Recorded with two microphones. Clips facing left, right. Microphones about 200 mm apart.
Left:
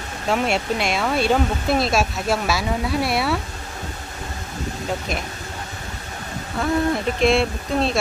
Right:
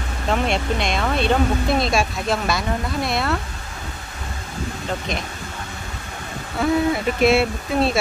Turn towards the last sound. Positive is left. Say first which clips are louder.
# right 1 dB
turn(degrees=-5)  # may be behind; listen again after turning